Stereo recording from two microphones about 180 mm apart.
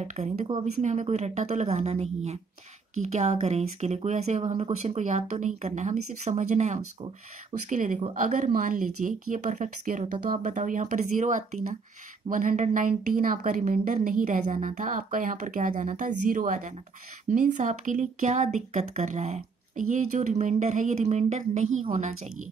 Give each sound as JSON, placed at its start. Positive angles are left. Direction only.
{"t": 0.0, "sound": "a woman's voice", "side_deg": -40}